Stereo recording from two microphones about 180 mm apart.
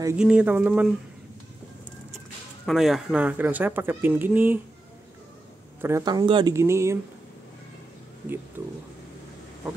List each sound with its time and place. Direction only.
0.2 s speech: 5° right (ahead or behind)
2.6 s speech: centre (ahead or behind)
5.8 s speech: 15° right (ahead or behind)